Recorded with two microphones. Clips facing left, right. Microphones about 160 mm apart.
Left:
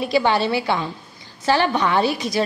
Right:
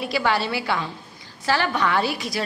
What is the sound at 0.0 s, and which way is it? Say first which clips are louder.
A woman's voice: left 4 dB; 25° left (ahead or behind).